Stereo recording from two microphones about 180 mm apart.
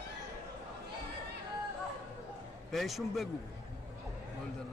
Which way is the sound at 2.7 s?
Centre (ahead or behind).